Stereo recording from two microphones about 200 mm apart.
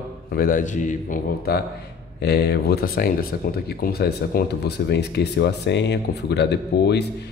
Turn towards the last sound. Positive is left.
turn(degrees=55)  # may be behind; listen again after turning